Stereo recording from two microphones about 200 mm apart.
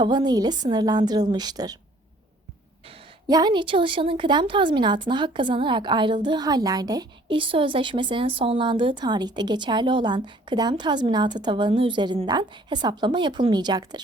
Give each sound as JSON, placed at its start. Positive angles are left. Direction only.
{"t": 0.0, "sound": "a woman's voice", "side_deg": -20}
{"t": 3.2, "sound": "a woman's voice", "side_deg": -20}